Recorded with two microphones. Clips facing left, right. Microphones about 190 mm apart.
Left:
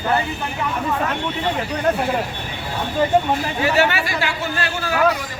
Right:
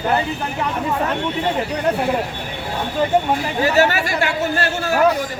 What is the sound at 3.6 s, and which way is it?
A man's voice, 40° right (ahead or behind).